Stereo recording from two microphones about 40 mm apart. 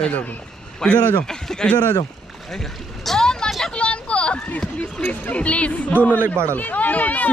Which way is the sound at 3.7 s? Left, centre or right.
Left.